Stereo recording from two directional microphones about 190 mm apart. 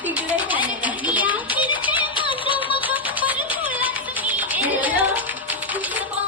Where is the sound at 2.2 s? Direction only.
25° left (ahead or behind).